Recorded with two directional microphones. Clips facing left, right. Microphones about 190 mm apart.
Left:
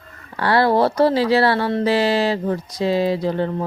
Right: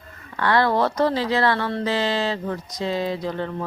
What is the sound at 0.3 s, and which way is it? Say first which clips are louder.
Speech: left 3 dB; 35° left (ahead or behind).